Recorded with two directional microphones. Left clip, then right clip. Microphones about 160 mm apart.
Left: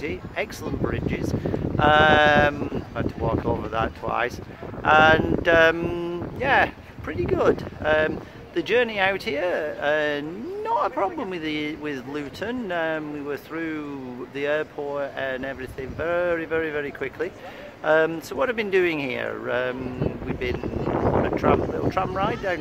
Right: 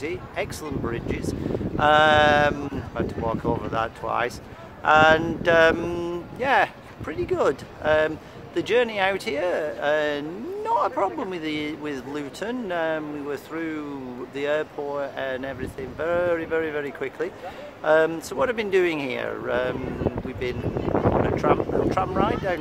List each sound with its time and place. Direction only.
0.0 s speech: 15° left (ahead or behind)
21.4 s speech: 15° left (ahead or behind)